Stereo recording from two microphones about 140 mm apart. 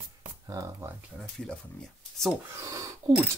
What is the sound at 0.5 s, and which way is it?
Speech, 25° right (ahead or behind).